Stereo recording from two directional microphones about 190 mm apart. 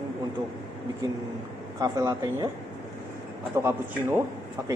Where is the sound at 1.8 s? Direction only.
20° right (ahead or behind).